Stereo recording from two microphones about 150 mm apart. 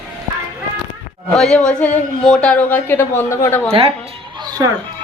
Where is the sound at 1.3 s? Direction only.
5° left (ahead or behind).